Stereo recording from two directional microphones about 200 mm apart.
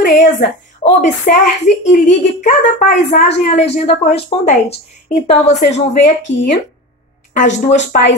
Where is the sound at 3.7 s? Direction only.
30° left (ahead or behind).